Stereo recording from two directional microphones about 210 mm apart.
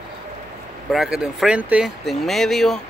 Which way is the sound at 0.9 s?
5° right (ahead or behind).